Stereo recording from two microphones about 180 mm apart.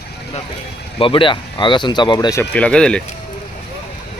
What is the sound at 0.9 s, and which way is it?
Speech, 30° left (ahead or behind).